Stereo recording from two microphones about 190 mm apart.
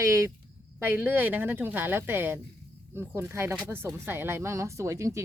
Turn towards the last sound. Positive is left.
turn(degrees=-15)  # may be behind; listen again after turning